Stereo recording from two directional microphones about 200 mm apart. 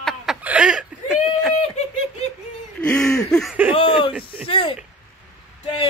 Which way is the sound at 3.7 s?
25° left (ahead or behind).